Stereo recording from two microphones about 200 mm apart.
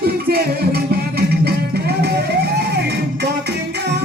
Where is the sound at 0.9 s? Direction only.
50° right (ahead or behind).